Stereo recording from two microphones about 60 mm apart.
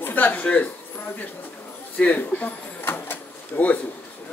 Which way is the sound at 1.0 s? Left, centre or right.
Left.